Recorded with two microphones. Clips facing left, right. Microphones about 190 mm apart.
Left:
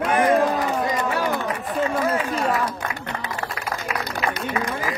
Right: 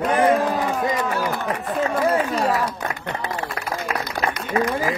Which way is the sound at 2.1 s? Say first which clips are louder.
Right 3 dB; 35° right (ahead or behind).